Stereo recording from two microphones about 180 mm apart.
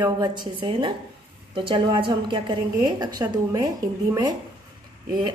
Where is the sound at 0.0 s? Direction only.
25° right (ahead or behind).